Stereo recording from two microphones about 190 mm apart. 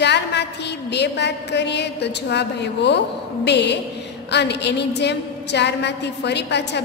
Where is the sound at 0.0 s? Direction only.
65° left (ahead or behind).